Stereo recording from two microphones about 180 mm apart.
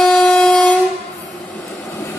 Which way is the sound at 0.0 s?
5° left (ahead or behind).